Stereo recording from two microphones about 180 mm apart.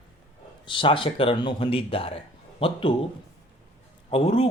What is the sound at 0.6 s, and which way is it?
Speech, 30° left (ahead or behind).